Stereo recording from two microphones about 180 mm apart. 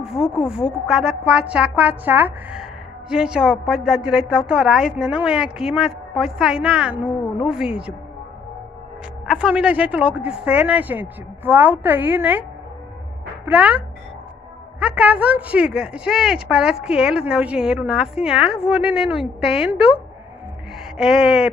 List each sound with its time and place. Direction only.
0.0 s a woman's voice: 5° right (ahead or behind)
9.3 s speech: 5° right (ahead or behind)
13.5 s a woman's voice: 10° right (ahead or behind)
19.1 s a woman's voice: 35° left (ahead or behind)
19.6 s a woman's voice: 5° right (ahead or behind)
21.0 s a woman's voice: 5° right (ahead or behind)